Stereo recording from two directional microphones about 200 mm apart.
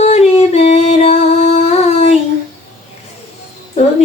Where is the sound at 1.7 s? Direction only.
30° left (ahead or behind).